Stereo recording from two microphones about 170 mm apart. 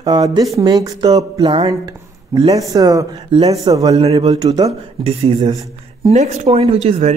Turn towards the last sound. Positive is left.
turn(degrees=-40)  # may be behind; listen again after turning